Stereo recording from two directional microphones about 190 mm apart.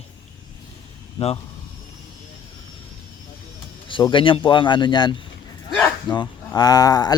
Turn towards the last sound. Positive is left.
turn(degrees=20)  # may be behind; listen again after turning